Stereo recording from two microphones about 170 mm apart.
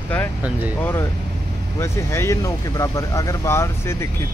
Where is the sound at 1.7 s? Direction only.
15° left (ahead or behind).